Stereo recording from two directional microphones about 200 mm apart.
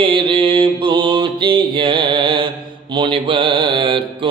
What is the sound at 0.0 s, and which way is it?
Mantra, 25° right (ahead or behind).